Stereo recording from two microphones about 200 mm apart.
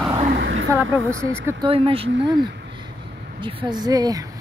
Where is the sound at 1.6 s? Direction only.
30° right (ahead or behind).